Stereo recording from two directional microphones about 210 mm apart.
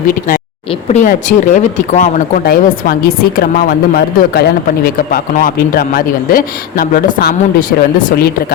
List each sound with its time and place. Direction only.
1.0 s speech: 35° left (ahead or behind)